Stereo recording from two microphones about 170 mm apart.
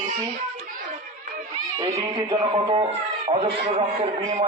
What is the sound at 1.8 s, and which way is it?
A man's voice, 25° right (ahead or behind).